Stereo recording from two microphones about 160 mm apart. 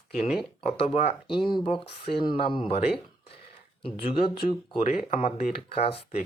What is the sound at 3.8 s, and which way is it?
Speech, 35° left (ahead or behind).